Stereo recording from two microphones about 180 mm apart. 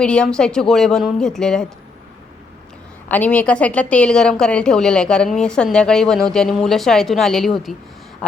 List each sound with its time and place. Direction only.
0.0 s a woman's voice: 5° left (ahead or behind)
3.1 s a woman's voice: 10° left (ahead or behind)